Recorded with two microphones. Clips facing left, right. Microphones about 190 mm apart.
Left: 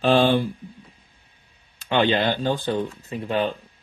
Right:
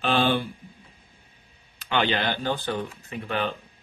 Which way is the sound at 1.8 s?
25° left (ahead or behind).